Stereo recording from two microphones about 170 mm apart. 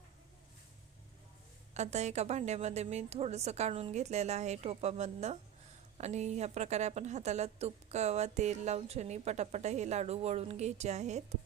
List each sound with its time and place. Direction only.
1.7 s a woman's voice: 40° right (ahead or behind)